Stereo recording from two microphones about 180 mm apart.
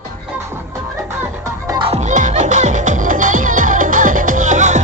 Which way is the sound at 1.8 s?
35° right (ahead or behind).